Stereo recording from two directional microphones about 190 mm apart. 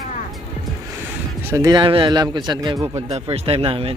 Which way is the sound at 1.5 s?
20° right (ahead or behind).